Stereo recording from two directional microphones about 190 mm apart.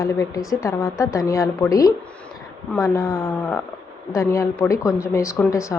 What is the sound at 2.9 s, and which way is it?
Speech, 20° left (ahead or behind).